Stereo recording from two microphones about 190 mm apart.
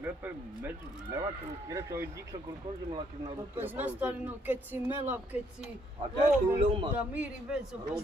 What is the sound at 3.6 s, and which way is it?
Speech, 10° right (ahead or behind).